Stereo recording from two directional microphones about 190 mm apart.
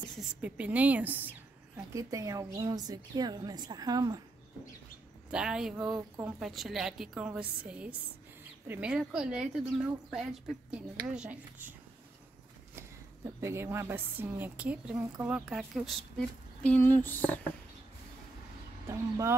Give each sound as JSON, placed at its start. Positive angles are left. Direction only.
{"t": 0.4, "sound": "a woman's voice", "side_deg": -10}
{"t": 5.3, "sound": "a woman's voice", "side_deg": -5}
{"t": 5.9, "sound": "a woman's voice", "side_deg": -20}
{"t": 6.4, "sound": "a woman's voice", "side_deg": 0}
{"t": 13.4, "sound": "a woman's voice", "side_deg": -15}
{"t": 18.9, "sound": "a woman's voice", "side_deg": -15}